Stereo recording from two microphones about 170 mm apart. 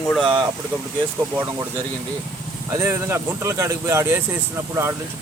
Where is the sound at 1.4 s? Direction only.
15° right (ahead or behind).